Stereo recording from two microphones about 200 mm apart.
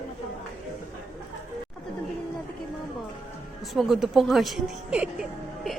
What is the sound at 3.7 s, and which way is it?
Speech, centre (ahead or behind).